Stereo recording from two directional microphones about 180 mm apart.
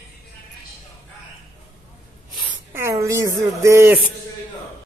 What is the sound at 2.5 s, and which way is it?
Speech, 15° right (ahead or behind).